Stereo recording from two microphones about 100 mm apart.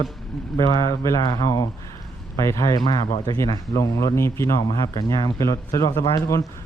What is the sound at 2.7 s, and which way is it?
A man's voice, 45° left (ahead or behind).